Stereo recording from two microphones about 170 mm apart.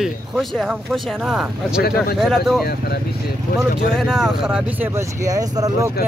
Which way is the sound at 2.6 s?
70° left (ahead or behind).